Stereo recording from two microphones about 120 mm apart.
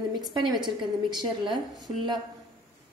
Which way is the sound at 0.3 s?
40° right (ahead or behind).